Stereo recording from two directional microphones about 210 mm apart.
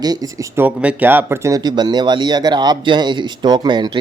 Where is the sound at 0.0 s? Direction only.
15° right (ahead or behind).